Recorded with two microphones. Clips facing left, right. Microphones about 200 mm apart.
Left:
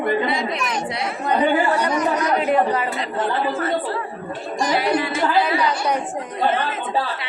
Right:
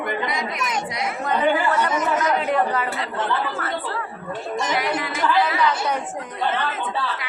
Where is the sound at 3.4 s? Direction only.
25° left (ahead or behind).